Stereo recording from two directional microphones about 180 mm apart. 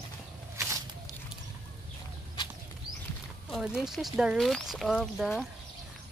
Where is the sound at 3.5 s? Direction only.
Centre (ahead or behind).